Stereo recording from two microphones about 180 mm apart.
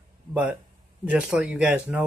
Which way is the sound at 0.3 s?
5° right (ahead or behind).